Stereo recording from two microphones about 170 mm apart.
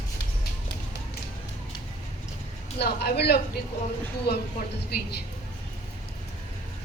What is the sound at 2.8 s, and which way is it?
Speech, 75° left (ahead or behind).